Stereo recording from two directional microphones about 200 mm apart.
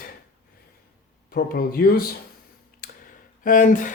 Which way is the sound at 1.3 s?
50° left (ahead or behind).